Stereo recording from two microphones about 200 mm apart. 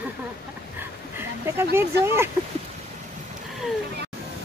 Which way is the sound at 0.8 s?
10° right (ahead or behind).